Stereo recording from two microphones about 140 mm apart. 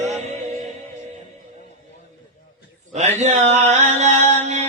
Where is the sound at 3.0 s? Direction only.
55° right (ahead or behind).